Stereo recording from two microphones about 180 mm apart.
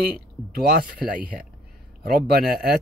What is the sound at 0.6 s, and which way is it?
Speech, 60° right (ahead or behind).